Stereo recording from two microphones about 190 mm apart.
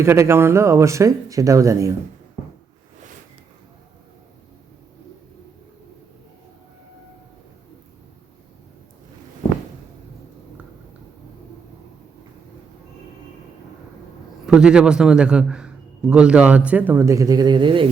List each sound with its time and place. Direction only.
0.0 s speech: 15° right (ahead or behind)
14.4 s a man's voice: 5° right (ahead or behind); by 17.8 s 25° right (ahead or behind)